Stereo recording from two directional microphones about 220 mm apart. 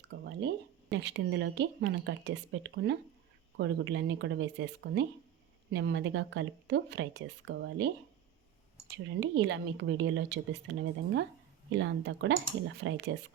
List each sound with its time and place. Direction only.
0.3 s a woman's voice: 50° right (ahead or behind)
8.9 s speech: 55° right (ahead or behind)